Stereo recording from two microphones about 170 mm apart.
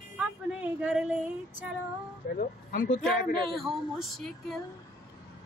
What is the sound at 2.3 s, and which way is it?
A woman's voice, 55° left (ahead or behind).